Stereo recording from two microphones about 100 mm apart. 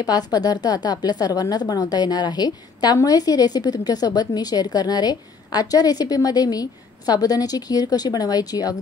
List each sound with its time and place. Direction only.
0.0 s a woman's voice: 40° left (ahead or behind)